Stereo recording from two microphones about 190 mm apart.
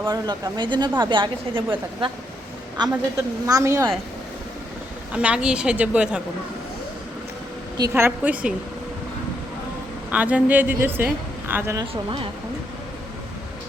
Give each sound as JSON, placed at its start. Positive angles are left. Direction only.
{"t": 0.0, "sound": "a woman's voice", "side_deg": -20}
{"t": 2.9, "sound": "a woman's voice", "side_deg": -15}
{"t": 5.1, "sound": "a woman's voice", "side_deg": -5}
{"t": 7.8, "sound": "a woman's voice", "side_deg": -15}
{"t": 10.1, "sound": "a woman's voice", "side_deg": -5}